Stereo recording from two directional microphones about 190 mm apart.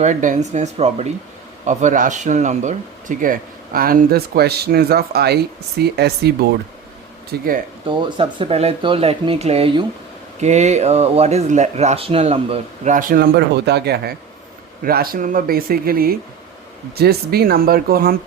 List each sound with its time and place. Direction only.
0.0 s speech: 40° right (ahead or behind); by 6.5 s 60° right (ahead or behind)
7.3 s speech: 50° right (ahead or behind)
7.9 s speech: 30° right (ahead or behind); by 18.2 s 50° right (ahead or behind)